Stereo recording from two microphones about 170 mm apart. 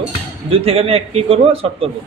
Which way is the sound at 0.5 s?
35° right (ahead or behind).